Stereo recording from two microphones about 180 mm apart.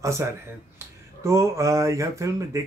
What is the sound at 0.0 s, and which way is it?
Speech, 15° right (ahead or behind).